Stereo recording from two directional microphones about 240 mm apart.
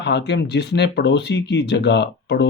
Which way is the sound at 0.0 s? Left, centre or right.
Left.